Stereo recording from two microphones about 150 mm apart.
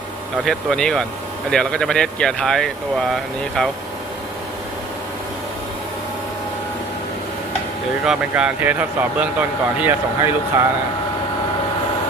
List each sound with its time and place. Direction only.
0.4 s speech: 5° left (ahead or behind)
8.0 s speech: 5° right (ahead or behind)